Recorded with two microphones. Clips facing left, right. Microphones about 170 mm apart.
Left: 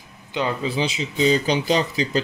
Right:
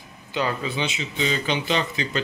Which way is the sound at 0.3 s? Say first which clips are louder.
Left 1 dB; 20° left (ahead or behind).